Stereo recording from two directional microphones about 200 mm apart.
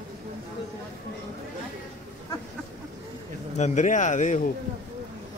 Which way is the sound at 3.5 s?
35° left (ahead or behind).